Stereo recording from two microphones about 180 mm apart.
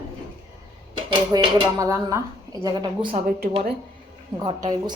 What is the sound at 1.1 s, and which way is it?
Speech, 20° right (ahead or behind).